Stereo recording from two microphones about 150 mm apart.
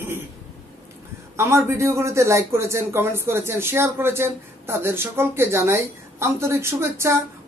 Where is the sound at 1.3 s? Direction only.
20° right (ahead or behind).